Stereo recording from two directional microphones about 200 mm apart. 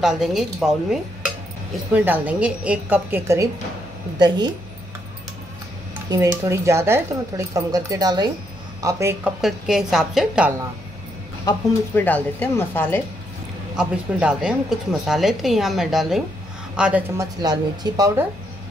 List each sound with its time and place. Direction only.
0.0 s a woman's voice: centre (ahead or behind)
6.0 s speech: 15° right (ahead or behind)
9.4 s a woman's voice: centre (ahead or behind)
11.4 s speech: 10° left (ahead or behind)
13.7 s a woman's voice: 5° right (ahead or behind)
17.2 s speech: 20° right (ahead or behind)